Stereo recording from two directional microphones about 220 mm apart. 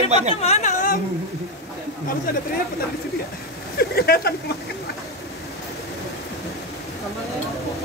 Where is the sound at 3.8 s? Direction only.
45° left (ahead or behind).